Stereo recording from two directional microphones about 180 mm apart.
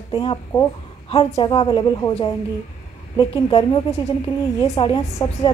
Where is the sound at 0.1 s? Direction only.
25° left (ahead or behind).